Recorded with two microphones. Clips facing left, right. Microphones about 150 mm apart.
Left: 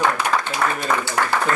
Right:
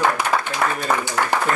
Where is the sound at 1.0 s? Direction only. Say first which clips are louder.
Even; 15° right (ahead or behind).